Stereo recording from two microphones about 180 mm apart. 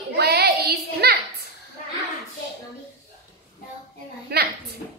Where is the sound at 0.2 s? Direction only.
65° right (ahead or behind).